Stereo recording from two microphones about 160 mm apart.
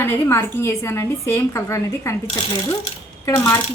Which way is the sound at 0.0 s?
15° left (ahead or behind).